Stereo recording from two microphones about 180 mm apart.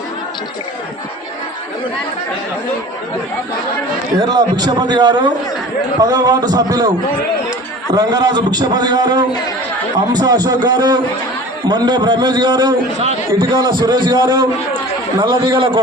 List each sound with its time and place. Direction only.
4.2 s a man's voice: 20° right (ahead or behind)
7.9 s a man's voice: 20° right (ahead or behind)